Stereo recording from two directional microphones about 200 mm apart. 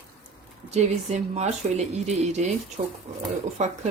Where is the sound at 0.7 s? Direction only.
35° right (ahead or behind).